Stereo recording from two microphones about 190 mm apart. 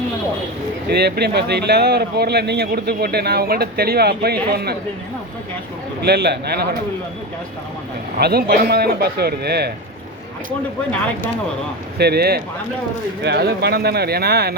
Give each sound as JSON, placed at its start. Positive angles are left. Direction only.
{"t": 0.9, "sound": "speech", "side_deg": -60}
{"t": 6.0, "sound": "speech", "side_deg": -60}
{"t": 8.2, "sound": "speech", "side_deg": -55}
{"t": 11.9, "sound": "speech", "side_deg": -55}